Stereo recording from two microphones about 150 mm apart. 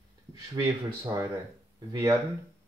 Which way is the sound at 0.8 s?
25° right (ahead or behind).